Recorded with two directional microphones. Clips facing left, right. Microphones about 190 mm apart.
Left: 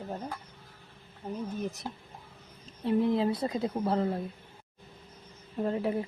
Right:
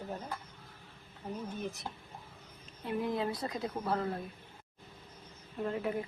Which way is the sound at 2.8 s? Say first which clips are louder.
Left 7 dB; 25° left (ahead or behind).